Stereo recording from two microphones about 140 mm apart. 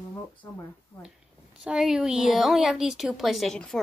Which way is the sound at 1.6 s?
5° right (ahead or behind).